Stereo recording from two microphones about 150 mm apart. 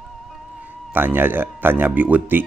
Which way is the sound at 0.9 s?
15° right (ahead or behind).